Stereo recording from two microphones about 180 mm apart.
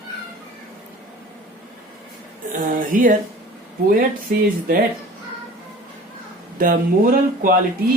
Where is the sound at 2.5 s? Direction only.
45° right (ahead or behind).